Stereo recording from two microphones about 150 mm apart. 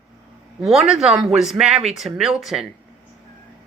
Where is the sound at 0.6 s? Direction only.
5° right (ahead or behind).